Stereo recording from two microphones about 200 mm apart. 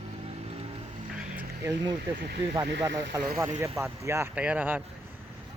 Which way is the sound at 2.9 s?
65° right (ahead or behind).